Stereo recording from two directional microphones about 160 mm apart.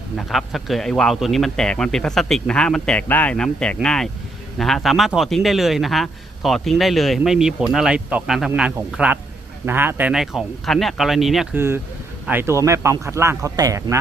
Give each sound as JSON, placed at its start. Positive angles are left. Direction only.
{"t": 0.2, "sound": "a man's voice", "side_deg": 0}
{"t": 11.5, "sound": "speech", "side_deg": -15}